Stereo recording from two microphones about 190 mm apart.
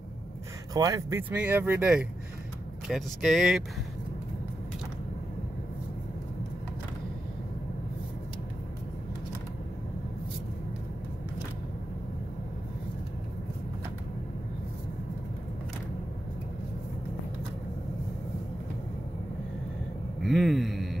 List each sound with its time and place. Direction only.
0.7 s speech: 20° right (ahead or behind)
1.3 s speech: 10° right (ahead or behind)
20.2 s a sound: centre (ahead or behind)